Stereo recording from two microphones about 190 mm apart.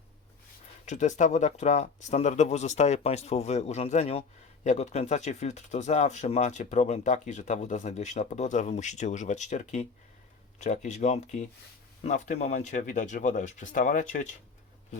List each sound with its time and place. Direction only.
0.9 s speech: 40° left (ahead or behind)